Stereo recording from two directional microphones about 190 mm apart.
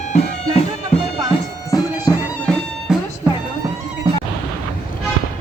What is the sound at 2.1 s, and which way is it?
Bagpipes, 20° left (ahead or behind).